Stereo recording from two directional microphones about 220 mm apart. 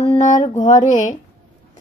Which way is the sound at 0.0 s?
30° left (ahead or behind).